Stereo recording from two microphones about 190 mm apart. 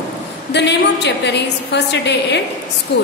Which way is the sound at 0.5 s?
65° left (ahead or behind).